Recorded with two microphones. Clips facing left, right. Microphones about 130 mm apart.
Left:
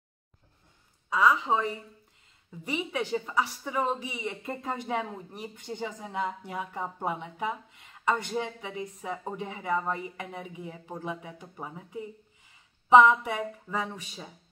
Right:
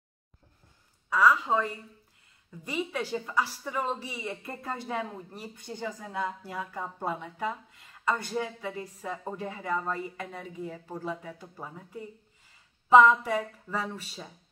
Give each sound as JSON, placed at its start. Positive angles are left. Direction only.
{"t": 1.1, "sound": "a woman's voice", "side_deg": 15}
{"t": 2.8, "sound": "a woman's voice", "side_deg": 20}